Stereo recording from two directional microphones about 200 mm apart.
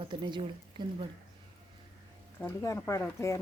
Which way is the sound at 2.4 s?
15° left (ahead or behind).